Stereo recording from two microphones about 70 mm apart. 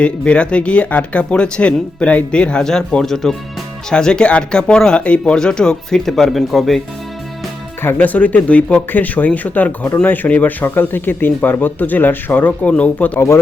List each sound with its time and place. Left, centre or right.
0.0 s speech: centre
7.8 s speech: left
13.1 s speech: left